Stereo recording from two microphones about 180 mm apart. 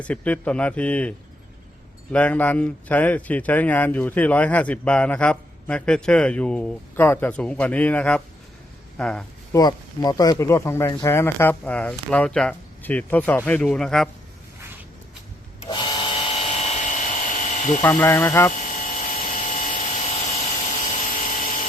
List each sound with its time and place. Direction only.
0.0 s speech: 10° left (ahead or behind)
2.1 s speech: 5° left (ahead or behind)
9.5 s speech: 20° left (ahead or behind); by 14.1 s centre (ahead or behind)
15.6 s wood: 25° left (ahead or behind)
17.8 s speech: 15° left (ahead or behind)
18.5 s a sound: 45° left (ahead or behind)